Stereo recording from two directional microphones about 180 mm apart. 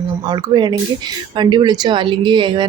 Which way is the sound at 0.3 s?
25° right (ahead or behind).